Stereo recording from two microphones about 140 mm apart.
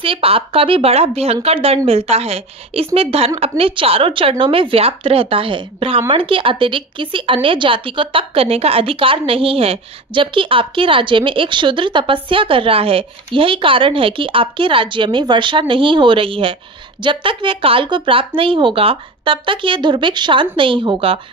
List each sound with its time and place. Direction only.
0.0 s a woman's voice: 40° right (ahead or behind)